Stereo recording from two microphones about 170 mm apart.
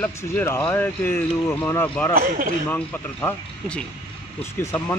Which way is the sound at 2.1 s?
55° right (ahead or behind).